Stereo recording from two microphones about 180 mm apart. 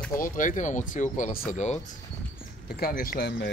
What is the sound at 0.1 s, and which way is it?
Speech, 45° left (ahead or behind).